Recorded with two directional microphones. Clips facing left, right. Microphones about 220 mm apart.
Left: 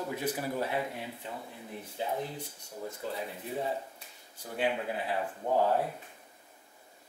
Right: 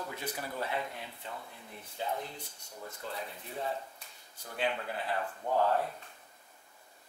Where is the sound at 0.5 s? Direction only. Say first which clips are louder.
Left 4 dB; 15° left (ahead or behind).